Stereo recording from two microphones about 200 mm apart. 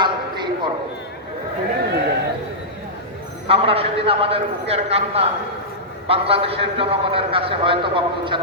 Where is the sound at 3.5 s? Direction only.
30° right (ahead or behind).